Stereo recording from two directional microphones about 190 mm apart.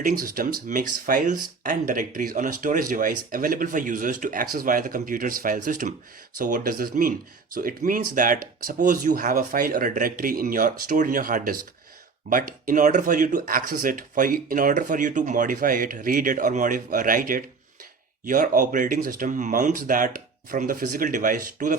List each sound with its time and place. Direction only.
0.0 s speech: 50° right (ahead or behind)